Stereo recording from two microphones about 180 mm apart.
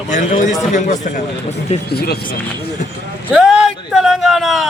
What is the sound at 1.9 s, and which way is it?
Speech, 60° left (ahead or behind).